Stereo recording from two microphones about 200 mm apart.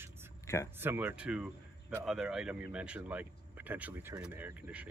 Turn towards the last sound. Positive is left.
turn(degrees=-5)  # may be behind; listen again after turning